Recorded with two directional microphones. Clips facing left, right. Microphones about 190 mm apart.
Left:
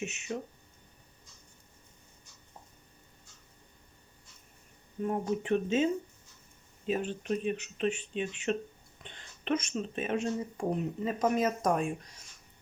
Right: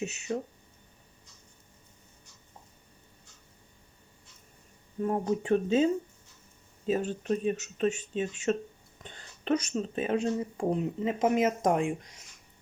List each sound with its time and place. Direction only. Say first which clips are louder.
0.3 s speech: right 4 dB; 40° right (ahead or behind)
5.0 s speech: right 3 dB; 35° right (ahead or behind)